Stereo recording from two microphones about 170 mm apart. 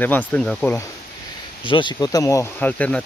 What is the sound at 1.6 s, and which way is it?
Speech, 30° left (ahead or behind).